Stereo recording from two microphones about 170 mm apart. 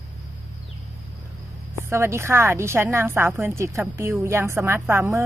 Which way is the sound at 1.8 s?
15° right (ahead or behind).